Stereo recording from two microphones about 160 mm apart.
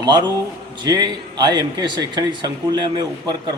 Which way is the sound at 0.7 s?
25° right (ahead or behind).